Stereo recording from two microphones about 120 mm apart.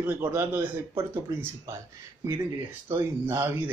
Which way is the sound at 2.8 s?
20° right (ahead or behind).